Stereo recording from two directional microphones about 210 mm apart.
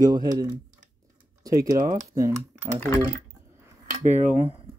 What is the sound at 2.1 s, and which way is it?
Speech, 15° right (ahead or behind).